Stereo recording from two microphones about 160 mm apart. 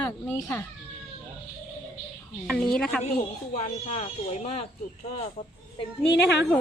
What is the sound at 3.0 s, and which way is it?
Speech, 45° left (ahead or behind).